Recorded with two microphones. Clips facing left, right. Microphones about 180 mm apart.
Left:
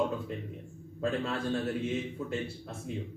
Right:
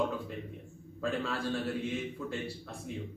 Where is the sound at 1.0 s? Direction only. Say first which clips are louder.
Left 2 dB; 25° left (ahead or behind).